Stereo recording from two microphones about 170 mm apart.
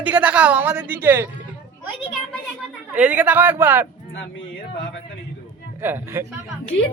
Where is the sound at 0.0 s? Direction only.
10° right (ahead or behind).